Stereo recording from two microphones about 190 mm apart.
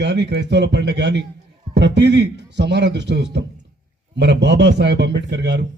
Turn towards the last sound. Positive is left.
turn(degrees=-65)  # may be behind; listen again after turning